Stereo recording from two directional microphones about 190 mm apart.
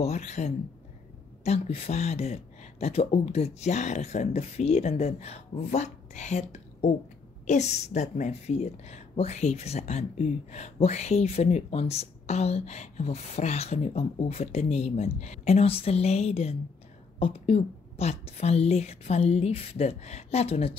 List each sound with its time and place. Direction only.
0.0 s a woman's voice: 35° left (ahead or behind)